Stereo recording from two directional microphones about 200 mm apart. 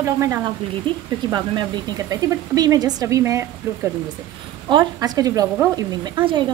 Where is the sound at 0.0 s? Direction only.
15° right (ahead or behind).